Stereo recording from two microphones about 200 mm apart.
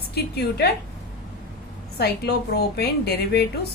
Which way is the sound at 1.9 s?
55° left (ahead or behind).